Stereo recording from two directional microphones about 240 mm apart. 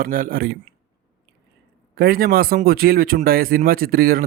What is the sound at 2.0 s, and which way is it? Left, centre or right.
Speech, right.